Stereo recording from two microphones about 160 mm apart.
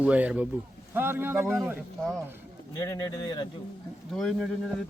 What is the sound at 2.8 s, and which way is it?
Speech, 25° left (ahead or behind).